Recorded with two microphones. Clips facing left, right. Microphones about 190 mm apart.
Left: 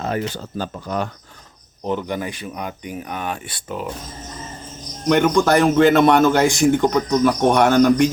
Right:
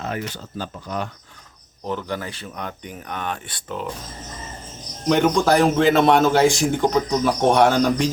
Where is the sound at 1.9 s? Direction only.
15° left (ahead or behind).